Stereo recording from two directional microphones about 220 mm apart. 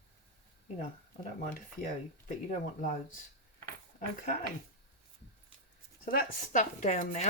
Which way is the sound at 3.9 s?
35° left (ahead or behind).